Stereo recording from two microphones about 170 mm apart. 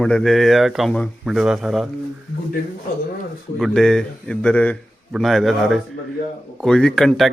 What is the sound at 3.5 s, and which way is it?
Speech, centre (ahead or behind).